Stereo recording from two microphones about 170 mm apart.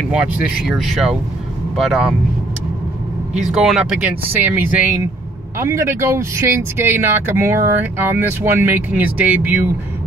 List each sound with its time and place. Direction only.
0.1 s speech: 5° right (ahead or behind)
3.6 s speech: centre (ahead or behind)